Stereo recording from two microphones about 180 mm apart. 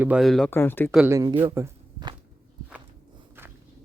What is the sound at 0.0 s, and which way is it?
Speech, 5° right (ahead or behind).